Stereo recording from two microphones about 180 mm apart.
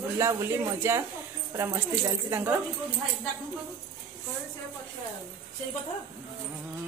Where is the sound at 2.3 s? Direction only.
15° right (ahead or behind).